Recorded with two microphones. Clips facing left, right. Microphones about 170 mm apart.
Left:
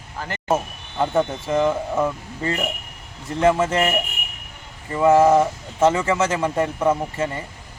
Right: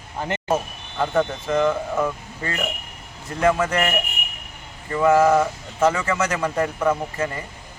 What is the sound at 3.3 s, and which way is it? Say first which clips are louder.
Speech: left 2 dB; 25° left (ahead or behind).